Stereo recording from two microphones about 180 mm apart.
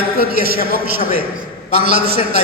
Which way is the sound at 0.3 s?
60° right (ahead or behind).